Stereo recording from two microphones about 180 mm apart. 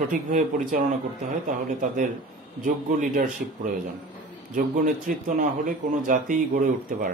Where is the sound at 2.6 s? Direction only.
50° right (ahead or behind).